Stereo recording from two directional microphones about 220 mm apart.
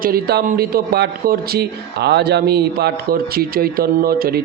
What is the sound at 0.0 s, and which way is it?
A man's voice, 45° right (ahead or behind).